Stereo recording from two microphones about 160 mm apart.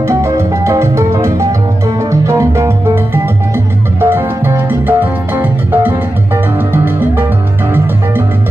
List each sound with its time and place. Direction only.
0.0 s music: 15° right (ahead or behind)
4.0 s music: 15° right (ahead or behind)